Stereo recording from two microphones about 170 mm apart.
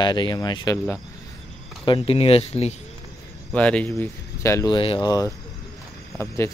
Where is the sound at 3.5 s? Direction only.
5° left (ahead or behind); by 5.3 s 20° left (ahead or behind).